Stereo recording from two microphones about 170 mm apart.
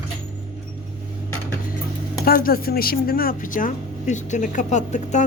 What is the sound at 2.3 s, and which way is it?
A woman's voice, 60° left (ahead or behind).